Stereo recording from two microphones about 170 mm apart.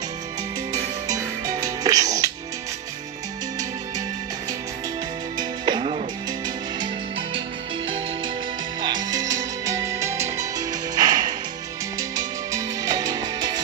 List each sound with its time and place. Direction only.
1.6 s music: 20° right (ahead or behind)
5.4 s music: 30° right (ahead or behind)
8.8 s music: 25° right (ahead or behind)